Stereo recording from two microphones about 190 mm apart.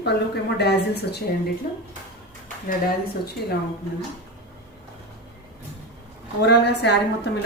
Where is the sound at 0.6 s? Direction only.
60° left (ahead or behind).